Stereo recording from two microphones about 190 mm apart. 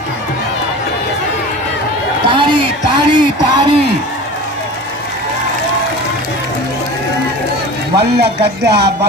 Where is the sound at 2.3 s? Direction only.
25° right (ahead or behind).